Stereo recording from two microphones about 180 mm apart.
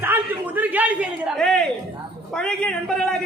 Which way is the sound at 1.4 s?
5° left (ahead or behind).